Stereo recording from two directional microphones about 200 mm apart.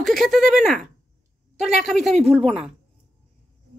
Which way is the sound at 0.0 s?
Centre (ahead or behind).